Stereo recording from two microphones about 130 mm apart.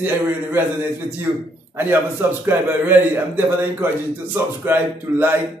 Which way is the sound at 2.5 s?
15° right (ahead or behind).